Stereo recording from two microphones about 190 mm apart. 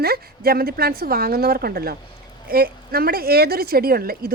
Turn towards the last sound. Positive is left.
turn(degrees=-50)  # may be behind; listen again after turning